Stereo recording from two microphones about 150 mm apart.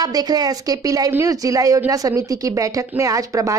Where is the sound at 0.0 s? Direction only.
25° right (ahead or behind).